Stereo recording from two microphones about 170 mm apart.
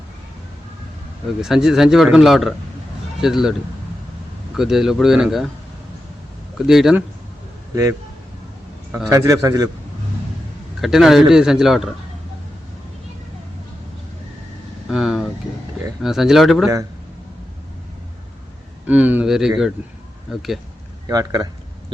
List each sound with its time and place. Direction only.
1.4 s a man's voice: 5° right (ahead or behind)
4.5 s a man's voice: centre (ahead or behind)
6.7 s a man's voice: centre (ahead or behind)
8.9 s a man's voice: 15° right (ahead or behind)
10.8 s a man's voice: centre (ahead or behind)
14.8 s a man's voice: 5° right (ahead or behind)
18.9 s a man's voice: 10° right (ahead or behind)
21.1 s a man's voice: 20° right (ahead or behind)